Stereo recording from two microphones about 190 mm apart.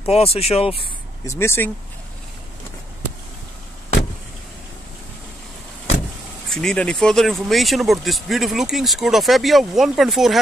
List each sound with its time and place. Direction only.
0.0 s speech: 30° left (ahead or behind)
1.2 s speech: 15° left (ahead or behind)
6.5 s speech: 5° left (ahead or behind)